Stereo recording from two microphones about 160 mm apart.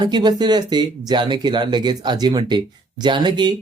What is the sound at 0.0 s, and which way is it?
Speech, 25° right (ahead or behind).